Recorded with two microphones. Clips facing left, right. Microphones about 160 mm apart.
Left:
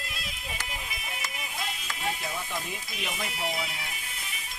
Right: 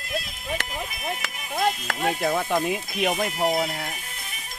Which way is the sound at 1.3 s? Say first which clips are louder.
Right 16 dB; 45° right (ahead or behind).